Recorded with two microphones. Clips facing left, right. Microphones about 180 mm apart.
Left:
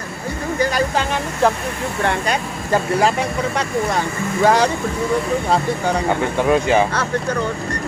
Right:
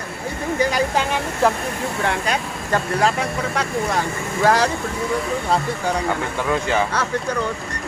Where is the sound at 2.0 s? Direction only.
Centre (ahead or behind).